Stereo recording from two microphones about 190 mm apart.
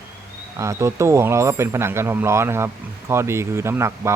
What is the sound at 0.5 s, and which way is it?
A man's voice, 15° right (ahead or behind).